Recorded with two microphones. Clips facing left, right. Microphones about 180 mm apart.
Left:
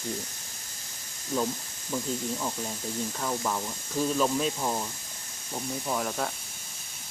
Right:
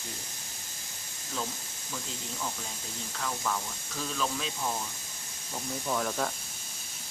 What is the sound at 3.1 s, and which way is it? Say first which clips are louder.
Speech: even; 25° left (ahead or behind).